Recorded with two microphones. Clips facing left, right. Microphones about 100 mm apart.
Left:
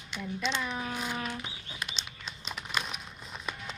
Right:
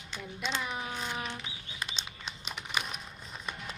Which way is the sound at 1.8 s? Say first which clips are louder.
Right 2 dB; 20° right (ahead or behind).